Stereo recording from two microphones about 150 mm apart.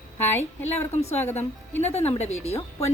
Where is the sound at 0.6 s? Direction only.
45° left (ahead or behind).